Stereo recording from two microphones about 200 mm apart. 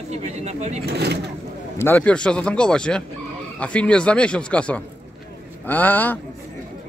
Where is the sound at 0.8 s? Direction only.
55° right (ahead or behind).